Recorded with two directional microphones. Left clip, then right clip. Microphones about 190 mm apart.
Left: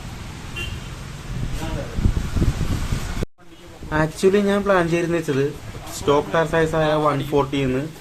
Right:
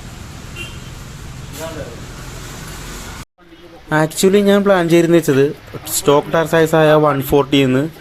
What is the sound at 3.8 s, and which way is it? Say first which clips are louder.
Speech: right 5 dB; 40° right (ahead or behind).